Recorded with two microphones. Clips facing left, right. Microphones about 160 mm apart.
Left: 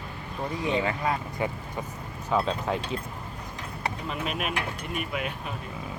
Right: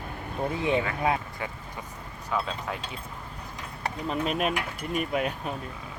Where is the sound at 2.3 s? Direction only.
25° left (ahead or behind).